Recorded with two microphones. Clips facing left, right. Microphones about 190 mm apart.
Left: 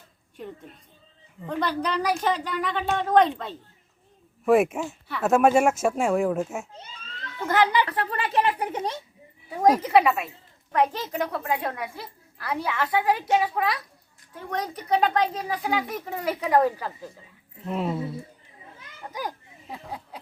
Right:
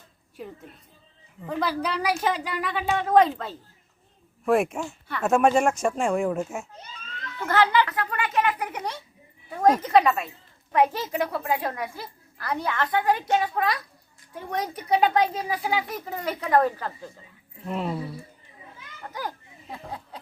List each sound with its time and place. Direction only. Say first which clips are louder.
0.3 s a child's voice: left 1 dB; 5° right (ahead or behind)
7.3 s a child's voice: even; 15° left (ahead or behind)
7.9 s speech: left 1 dB; 30° left (ahead or behind)
9.6 s speech: even; 10° left (ahead or behind)
10.7 s a child's voice: right 2 dB; 5° right (ahead or behind)
14.3 s a child's voice: right 1 dB; 10° right (ahead or behind)
17.9 s a child's voice: left 2 dB; 20° left (ahead or behind)